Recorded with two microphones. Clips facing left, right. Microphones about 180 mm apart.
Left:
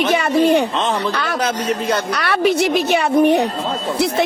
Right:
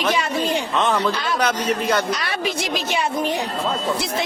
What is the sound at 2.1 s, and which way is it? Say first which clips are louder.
Speech: left 7 dB; 65° left (ahead or behind).